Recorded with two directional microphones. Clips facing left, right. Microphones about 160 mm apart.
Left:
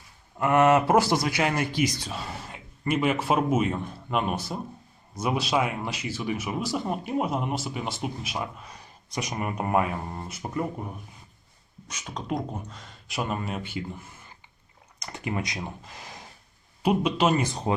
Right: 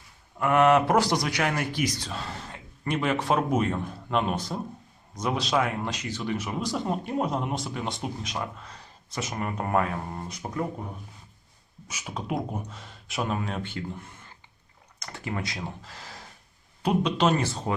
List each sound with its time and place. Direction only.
0.3 s speech: 10° left (ahead or behind)
11.9 s speech: 10° right (ahead or behind); by 17.7 s 15° left (ahead or behind)